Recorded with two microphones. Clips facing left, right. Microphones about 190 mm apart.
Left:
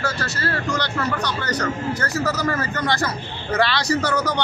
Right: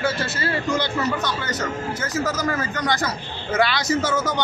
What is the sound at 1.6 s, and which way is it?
Speech, 5° right (ahead or behind).